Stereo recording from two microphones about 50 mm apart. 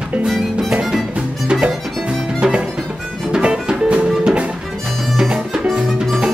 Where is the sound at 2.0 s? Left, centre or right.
Right.